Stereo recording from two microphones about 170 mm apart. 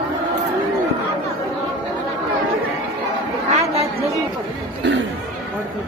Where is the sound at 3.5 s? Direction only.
40° right (ahead or behind).